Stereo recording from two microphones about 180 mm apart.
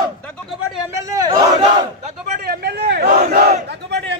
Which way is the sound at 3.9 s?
70° right (ahead or behind).